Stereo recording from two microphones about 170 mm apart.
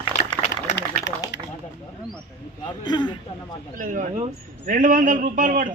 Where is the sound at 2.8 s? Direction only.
25° left (ahead or behind).